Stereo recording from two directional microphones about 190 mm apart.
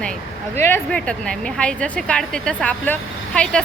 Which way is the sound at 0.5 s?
10° left (ahead or behind).